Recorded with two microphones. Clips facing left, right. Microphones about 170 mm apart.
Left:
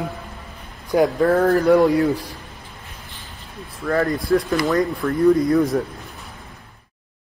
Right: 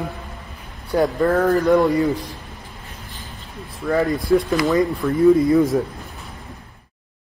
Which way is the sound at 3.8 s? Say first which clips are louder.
Right 1 dB; 10° right (ahead or behind).